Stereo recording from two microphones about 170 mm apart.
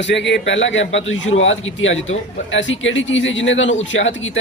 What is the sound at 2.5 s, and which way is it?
A man's voice, 90° left.